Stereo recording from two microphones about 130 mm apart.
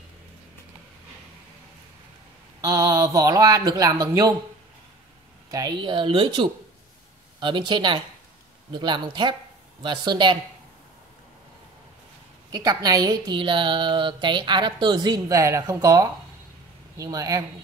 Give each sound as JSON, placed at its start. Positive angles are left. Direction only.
{"t": 2.6, "sound": "speech", "side_deg": -30}
{"t": 5.5, "sound": "a woman's voice", "side_deg": -25}
{"t": 5.8, "sound": "a woman's voice", "side_deg": -40}
{"t": 12.5, "sound": "a woman's voice", "side_deg": -30}